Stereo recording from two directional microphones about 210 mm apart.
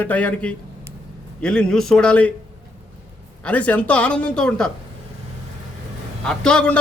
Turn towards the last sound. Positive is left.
turn(degrees=5)  # may be behind; listen again after turning